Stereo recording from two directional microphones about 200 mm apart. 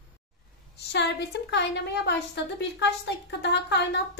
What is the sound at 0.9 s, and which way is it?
A woman's voice, 60° left (ahead or behind).